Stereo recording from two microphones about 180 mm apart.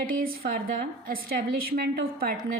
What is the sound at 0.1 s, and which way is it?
A woman's voice, 55° right (ahead or behind).